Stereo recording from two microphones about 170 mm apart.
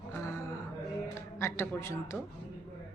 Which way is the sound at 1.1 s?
15° left (ahead or behind).